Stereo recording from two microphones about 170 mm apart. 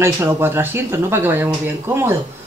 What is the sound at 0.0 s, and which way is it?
Speech, 15° right (ahead or behind).